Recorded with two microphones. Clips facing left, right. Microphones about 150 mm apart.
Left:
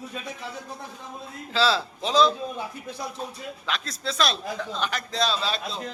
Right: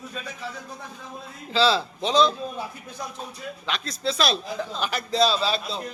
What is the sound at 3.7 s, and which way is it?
A man's voice, centre (ahead or behind).